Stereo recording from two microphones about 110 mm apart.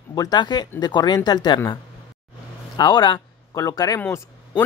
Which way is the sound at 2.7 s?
40° left (ahead or behind).